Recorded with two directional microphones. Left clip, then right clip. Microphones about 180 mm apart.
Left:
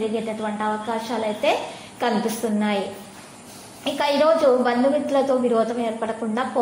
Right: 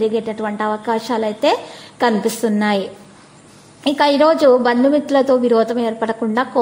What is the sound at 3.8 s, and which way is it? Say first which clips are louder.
A woman's voice: right 6 dB; 40° right (ahead or behind).